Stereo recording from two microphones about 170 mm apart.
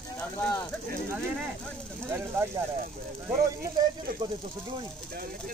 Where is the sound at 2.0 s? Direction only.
15° right (ahead or behind).